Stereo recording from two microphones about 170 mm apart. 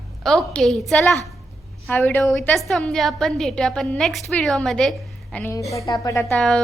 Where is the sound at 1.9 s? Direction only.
10° left (ahead or behind).